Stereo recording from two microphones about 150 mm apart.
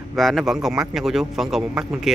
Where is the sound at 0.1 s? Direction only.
Centre (ahead or behind).